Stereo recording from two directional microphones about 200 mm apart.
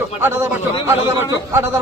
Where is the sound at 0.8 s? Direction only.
10° right (ahead or behind).